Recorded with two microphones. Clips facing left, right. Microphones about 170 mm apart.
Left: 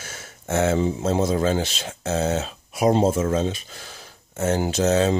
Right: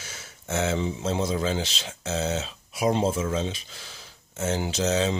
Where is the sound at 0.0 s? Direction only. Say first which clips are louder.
Left 4 dB; 50° left (ahead or behind).